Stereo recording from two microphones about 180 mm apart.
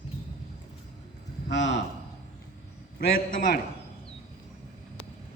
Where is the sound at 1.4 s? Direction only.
80° left.